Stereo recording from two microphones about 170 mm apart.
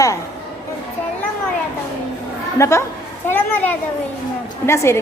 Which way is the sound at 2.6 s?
15° left (ahead or behind).